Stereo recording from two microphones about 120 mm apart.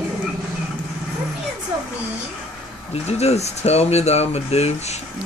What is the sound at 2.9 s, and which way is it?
Speech, 60° left (ahead or behind).